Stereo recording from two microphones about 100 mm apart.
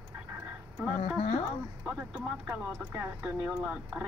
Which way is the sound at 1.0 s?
90° left.